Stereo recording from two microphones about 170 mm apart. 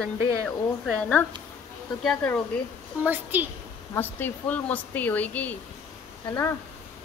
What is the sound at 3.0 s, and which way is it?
Speech, 10° right (ahead or behind).